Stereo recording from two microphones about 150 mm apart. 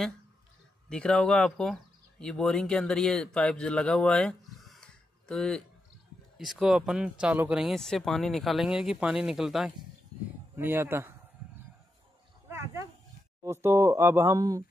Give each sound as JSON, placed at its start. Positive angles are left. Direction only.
{"t": 0.8, "sound": "speech", "side_deg": 5}
{"t": 10.5, "sound": "speech", "side_deg": -15}
{"t": 12.4, "sound": "dog", "side_deg": -15}
{"t": 13.4, "sound": "speech", "side_deg": -20}